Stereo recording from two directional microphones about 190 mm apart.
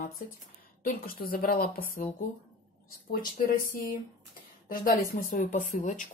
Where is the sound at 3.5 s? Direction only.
45° left (ahead or behind).